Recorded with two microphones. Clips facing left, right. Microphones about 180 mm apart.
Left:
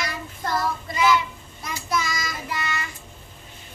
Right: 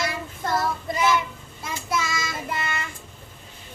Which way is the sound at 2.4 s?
50° right (ahead or behind).